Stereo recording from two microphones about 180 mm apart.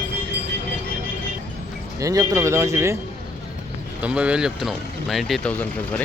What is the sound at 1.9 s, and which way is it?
Speech, 15° right (ahead or behind).